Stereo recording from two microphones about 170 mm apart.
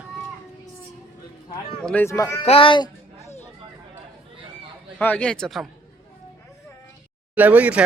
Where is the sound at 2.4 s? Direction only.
35° left (ahead or behind).